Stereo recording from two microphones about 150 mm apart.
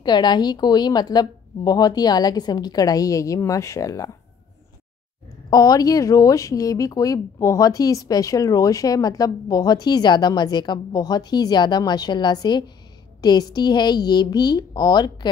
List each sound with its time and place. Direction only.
0.0 s speech: 30° left (ahead or behind)
5.5 s speech: 25° left (ahead or behind)